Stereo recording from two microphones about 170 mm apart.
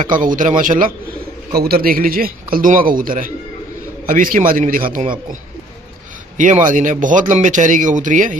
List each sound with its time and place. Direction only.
0.2 s speech: 50° right (ahead or behind)
1.5 s speech: 65° right (ahead or behind)
6.3 s speech: 50° right (ahead or behind)